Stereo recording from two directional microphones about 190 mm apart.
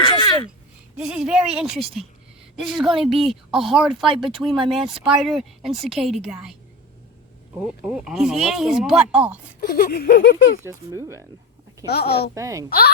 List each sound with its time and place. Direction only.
0.0 s a sound: 25° left (ahead or behind)
0.9 s speech: 5° right (ahead or behind)
7.6 s speech: 5° right (ahead or behind)
9.6 s speech: 50° left (ahead or behind); by 10.6 s 65° left (ahead or behind)
10.6 s speech: 15° right (ahead or behind)
11.9 s speech: 60° left (ahead or behind)
12.3 s speech: 15° right (ahead or behind)